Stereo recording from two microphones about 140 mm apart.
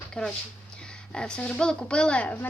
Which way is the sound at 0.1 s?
5° left (ahead or behind).